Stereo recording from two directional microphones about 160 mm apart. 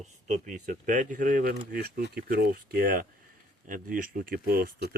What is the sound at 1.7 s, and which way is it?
Speech, 70° right (ahead or behind).